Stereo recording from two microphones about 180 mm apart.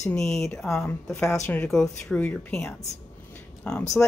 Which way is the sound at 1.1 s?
15° left (ahead or behind).